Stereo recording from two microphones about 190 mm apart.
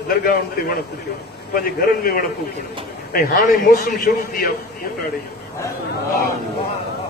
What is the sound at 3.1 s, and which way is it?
A man's voice, 50° left (ahead or behind).